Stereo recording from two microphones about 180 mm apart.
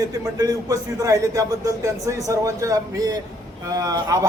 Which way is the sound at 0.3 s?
20° right (ahead or behind).